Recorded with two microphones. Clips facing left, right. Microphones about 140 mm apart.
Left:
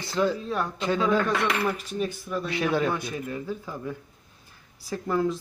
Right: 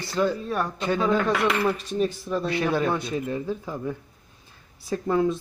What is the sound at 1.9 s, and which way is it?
Speech, 30° right (ahead or behind).